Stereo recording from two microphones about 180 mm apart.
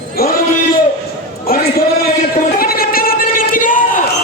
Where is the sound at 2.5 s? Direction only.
55° left (ahead or behind).